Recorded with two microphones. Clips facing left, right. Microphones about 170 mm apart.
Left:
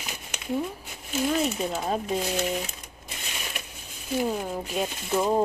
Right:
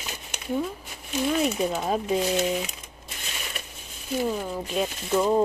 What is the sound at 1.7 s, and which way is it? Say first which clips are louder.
Speech: right 2 dB; centre (ahead or behind).